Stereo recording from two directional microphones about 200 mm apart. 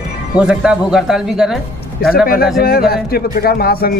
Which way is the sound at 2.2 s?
50° left (ahead or behind).